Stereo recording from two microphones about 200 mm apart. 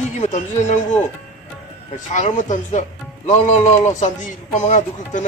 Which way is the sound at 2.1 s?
35° left (ahead or behind).